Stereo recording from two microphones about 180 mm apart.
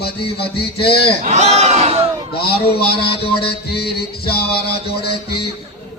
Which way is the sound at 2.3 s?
60° left (ahead or behind).